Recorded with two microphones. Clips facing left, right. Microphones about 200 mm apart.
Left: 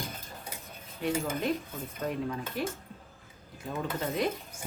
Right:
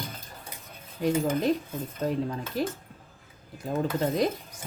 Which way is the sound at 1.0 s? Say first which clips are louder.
Right 5 dB; 35° right (ahead or behind).